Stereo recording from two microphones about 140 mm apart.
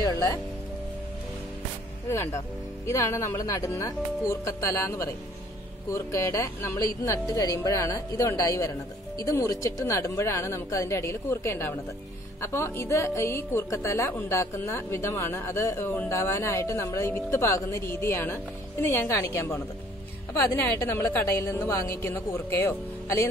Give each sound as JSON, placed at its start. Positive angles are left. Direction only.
{"t": 0.0, "sound": "speech", "side_deg": 25}
{"t": 2.0, "sound": "speech", "side_deg": 20}